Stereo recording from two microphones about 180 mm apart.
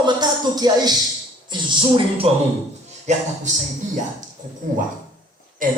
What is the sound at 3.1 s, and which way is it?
Speech, 40° right (ahead or behind).